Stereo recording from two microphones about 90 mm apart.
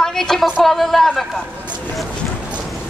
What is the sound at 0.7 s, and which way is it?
Speech, 5° left (ahead or behind).